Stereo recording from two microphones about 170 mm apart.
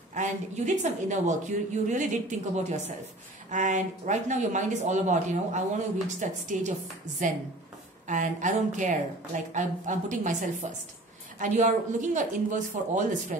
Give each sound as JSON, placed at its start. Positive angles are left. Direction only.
{"t": 0.1, "sound": "a woman's voice", "side_deg": -45}
{"t": 8.1, "sound": "a woman's voice", "side_deg": -45}